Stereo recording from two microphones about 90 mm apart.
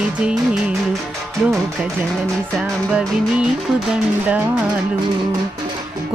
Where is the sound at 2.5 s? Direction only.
5° right (ahead or behind).